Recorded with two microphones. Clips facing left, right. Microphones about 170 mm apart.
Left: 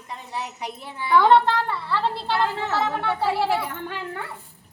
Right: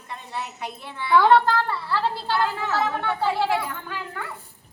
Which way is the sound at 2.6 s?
30° left (ahead or behind).